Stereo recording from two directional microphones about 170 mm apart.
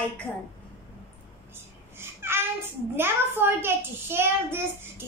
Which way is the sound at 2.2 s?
15° right (ahead or behind).